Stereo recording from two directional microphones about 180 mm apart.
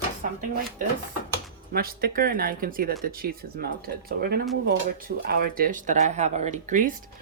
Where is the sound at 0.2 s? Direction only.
50° right (ahead or behind).